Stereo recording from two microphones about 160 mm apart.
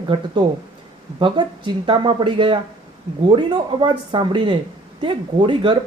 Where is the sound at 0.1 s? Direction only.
30° right (ahead or behind).